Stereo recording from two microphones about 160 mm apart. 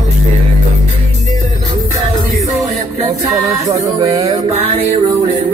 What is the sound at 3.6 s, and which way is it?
Music, 20° right (ahead or behind).